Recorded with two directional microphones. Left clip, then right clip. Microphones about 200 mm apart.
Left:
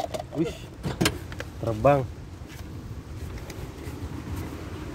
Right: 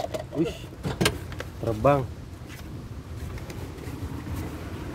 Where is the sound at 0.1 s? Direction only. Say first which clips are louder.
Right 1 dB; 35° left (ahead or behind).